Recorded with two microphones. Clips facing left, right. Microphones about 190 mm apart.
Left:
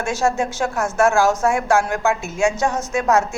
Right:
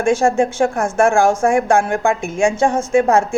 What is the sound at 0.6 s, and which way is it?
A woman's voice, 30° right (ahead or behind).